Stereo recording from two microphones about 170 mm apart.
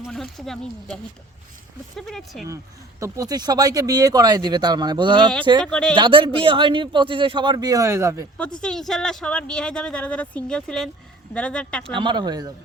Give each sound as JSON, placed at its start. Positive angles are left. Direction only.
{"t": 0.0, "sound": "speech", "side_deg": 0}
{"t": 2.0, "sound": "speech", "side_deg": 0}
{"t": 3.0, "sound": "a man's voice", "side_deg": -20}
{"t": 5.6, "sound": "speech", "side_deg": 5}
{"t": 5.9, "sound": "a man's voice", "side_deg": -30}
{"t": 8.6, "sound": "speech", "side_deg": 0}
{"t": 11.9, "sound": "a man's voice", "side_deg": -25}